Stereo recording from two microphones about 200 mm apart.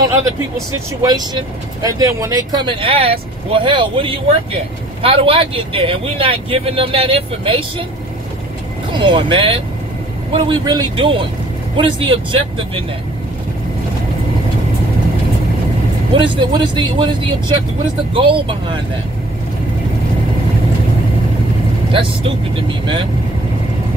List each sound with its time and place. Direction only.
1.0 s speech: 20° right (ahead or behind)
8.9 s speech: 25° right (ahead or behind)
16.1 s speech: 25° right (ahead or behind)
22.7 s speech: 25° right (ahead or behind)